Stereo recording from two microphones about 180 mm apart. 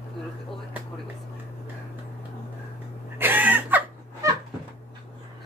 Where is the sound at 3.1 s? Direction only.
10° right (ahead or behind).